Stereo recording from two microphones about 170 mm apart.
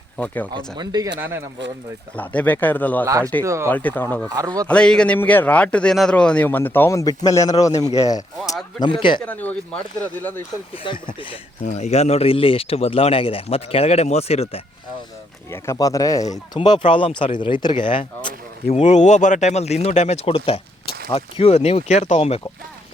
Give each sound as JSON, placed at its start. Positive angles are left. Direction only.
{"t": 0.5, "sound": "speech", "side_deg": -25}
{"t": 2.1, "sound": "a man's voice", "side_deg": 10}
{"t": 3.1, "sound": "speech", "side_deg": -20}
{"t": 3.7, "sound": "a man's voice", "side_deg": 10}
{"t": 4.4, "sound": "speech", "side_deg": -20}
{"t": 4.7, "sound": "a man's voice", "side_deg": 5}
{"t": 9.2, "sound": "a man's voice", "side_deg": 10}
{"t": 10.8, "sound": "speech", "side_deg": 30}
{"t": 11.6, "sound": "speech", "side_deg": 40}
{"t": 15.5, "sound": "speech", "side_deg": 15}
{"t": 18.8, "sound": "speech", "side_deg": 45}